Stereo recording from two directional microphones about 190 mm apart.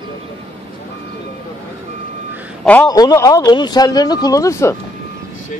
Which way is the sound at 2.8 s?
20° left (ahead or behind).